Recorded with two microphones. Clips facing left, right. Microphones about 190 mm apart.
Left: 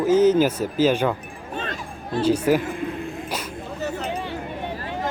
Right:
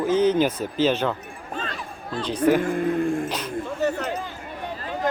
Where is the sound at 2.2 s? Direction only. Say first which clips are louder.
Left 1 dB; 10° left (ahead or behind).